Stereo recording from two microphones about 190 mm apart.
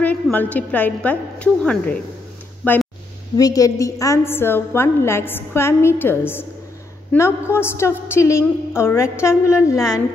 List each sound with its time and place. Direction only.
0.0 s a woman's voice: 10° left (ahead or behind)